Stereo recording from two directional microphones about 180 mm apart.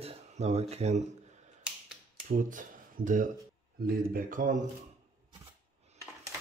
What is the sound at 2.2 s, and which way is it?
Speech, 50° right (ahead or behind).